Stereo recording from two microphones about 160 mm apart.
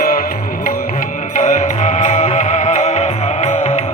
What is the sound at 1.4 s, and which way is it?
Music, 50° left (ahead or behind).